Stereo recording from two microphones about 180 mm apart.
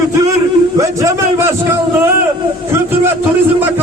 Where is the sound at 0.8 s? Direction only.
15° right (ahead or behind).